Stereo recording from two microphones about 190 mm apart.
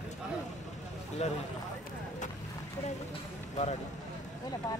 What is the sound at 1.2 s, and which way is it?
Speech, 35° left (ahead or behind).